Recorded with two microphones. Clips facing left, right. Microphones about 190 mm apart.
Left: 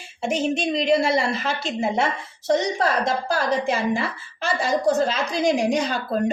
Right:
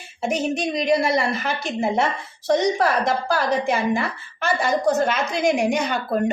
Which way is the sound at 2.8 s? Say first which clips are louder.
Right 2 dB; 25° left (ahead or behind).